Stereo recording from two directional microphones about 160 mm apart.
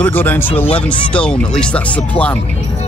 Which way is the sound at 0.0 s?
10° left (ahead or behind).